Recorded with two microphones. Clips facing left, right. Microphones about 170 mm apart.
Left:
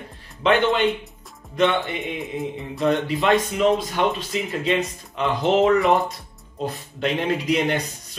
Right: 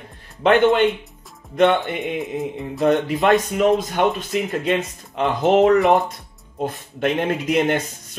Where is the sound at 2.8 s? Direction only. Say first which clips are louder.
Right 3 dB; 50° right (ahead or behind).